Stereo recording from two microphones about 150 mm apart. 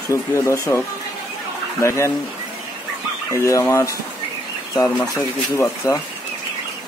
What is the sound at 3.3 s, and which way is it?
Speech, 20° left (ahead or behind).